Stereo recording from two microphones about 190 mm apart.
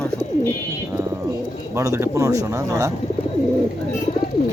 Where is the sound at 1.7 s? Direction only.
15° right (ahead or behind).